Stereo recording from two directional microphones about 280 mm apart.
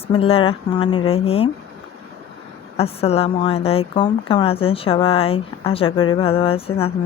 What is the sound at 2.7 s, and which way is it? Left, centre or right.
A woman's voice, left.